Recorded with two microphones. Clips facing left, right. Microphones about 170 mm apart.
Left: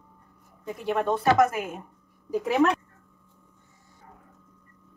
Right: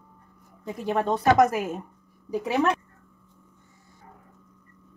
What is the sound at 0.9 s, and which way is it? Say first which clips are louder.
Speech: right 1 dB; 40° right (ahead or behind).